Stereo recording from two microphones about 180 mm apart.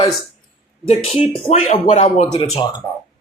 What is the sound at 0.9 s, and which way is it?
Speech, 35° left (ahead or behind).